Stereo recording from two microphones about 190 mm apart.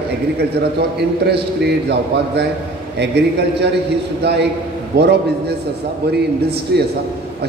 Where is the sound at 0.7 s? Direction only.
60° right (ahead or behind).